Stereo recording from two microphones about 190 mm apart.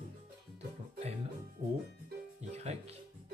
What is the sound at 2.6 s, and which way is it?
Music, 35° right (ahead or behind).